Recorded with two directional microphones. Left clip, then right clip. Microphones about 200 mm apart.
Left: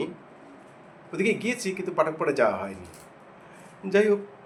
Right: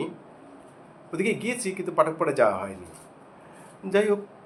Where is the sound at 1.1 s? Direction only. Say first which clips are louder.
Left 1 dB; 10° right (ahead or behind).